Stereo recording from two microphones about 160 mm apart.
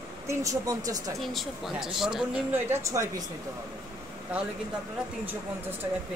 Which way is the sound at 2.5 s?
15° right (ahead or behind).